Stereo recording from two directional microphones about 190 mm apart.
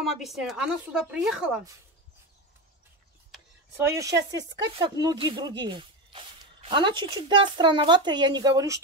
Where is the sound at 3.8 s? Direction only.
15° right (ahead or behind).